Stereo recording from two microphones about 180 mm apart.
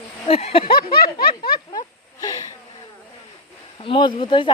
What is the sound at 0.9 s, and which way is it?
Snicker, 55° left (ahead or behind).